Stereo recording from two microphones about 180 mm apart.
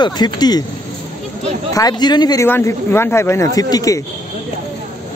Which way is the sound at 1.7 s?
20° left (ahead or behind).